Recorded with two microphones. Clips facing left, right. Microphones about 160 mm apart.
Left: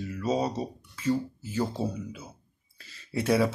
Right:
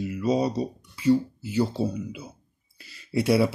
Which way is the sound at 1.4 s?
75° right (ahead or behind).